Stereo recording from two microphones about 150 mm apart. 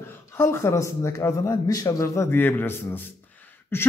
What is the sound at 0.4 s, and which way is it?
A man's voice, 15° left (ahead or behind).